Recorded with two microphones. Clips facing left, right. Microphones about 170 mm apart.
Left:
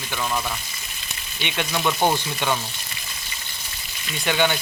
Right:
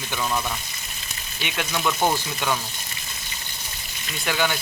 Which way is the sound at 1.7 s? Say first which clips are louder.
Left 1 dB; 5° left (ahead or behind).